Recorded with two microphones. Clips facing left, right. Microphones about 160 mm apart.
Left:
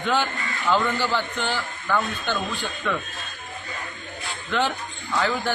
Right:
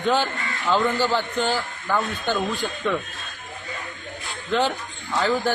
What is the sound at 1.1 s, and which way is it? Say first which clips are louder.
Speech: right 3 dB; 40° right (ahead or behind).